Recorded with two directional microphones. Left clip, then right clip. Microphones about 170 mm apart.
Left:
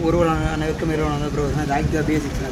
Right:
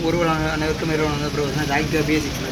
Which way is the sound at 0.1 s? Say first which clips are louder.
Even; 35° left (ahead or behind).